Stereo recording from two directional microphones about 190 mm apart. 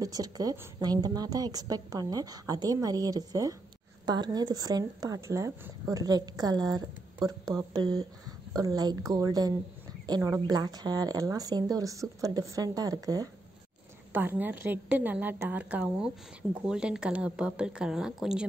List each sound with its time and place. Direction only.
0.0 s a woman's voice: 20° right (ahead or behind); by 18.4 s 5° right (ahead or behind)